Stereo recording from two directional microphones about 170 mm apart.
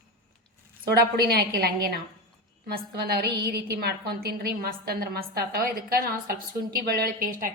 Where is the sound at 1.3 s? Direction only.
70° right (ahead or behind).